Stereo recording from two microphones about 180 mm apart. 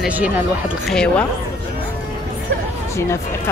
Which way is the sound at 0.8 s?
5° left (ahead or behind).